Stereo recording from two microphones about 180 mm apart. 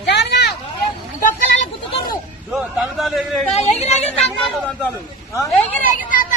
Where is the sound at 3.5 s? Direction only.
35° left (ahead or behind).